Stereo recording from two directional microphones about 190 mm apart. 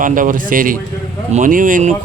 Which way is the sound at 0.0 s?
45° right (ahead or behind).